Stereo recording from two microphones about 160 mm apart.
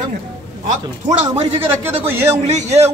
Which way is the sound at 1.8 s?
15° right (ahead or behind).